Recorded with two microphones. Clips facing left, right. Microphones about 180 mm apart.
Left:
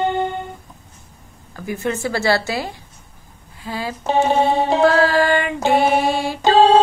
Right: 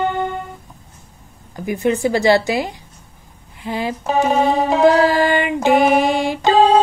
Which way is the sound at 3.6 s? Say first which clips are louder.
Right 4 dB; 20° right (ahead or behind).